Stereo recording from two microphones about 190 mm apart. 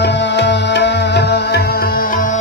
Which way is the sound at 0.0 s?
65° left (ahead or behind).